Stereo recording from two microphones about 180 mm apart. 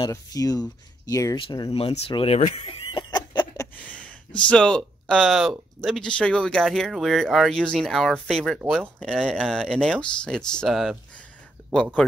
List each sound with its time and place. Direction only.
0.0 s speech: 20° left (ahead or behind)
4.5 s speech: 5° left (ahead or behind)
9.0 s speech: centre (ahead or behind)